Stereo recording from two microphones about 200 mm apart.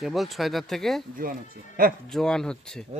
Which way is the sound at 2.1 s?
5° left (ahead or behind).